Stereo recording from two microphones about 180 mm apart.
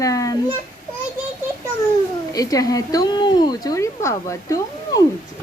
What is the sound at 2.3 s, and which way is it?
A woman's voice, 20° left (ahead or behind).